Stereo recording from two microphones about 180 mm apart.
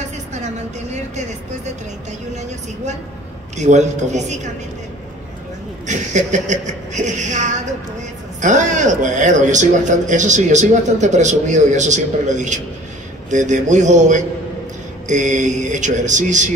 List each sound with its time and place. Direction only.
3.5 s speech: 40° right (ahead or behind)
5.9 s a man's voice: 40° right (ahead or behind)